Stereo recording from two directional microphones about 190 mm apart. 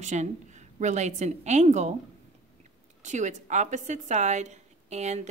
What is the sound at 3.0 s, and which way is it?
Speech, 40° right (ahead or behind).